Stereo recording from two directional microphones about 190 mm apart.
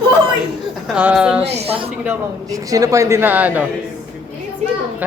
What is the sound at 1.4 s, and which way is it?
Speech, 35° right (ahead or behind).